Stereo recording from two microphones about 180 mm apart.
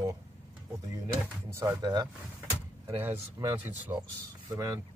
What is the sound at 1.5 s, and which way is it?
Speech, 20° right (ahead or behind).